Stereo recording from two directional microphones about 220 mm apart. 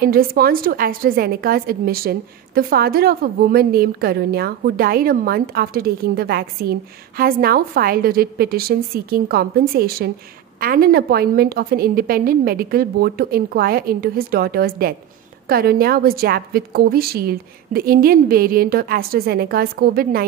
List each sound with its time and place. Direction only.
0.0 s a woman's voice: 40° right (ahead or behind)